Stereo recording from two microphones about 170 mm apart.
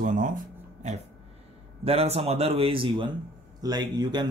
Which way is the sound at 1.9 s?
35° right (ahead or behind).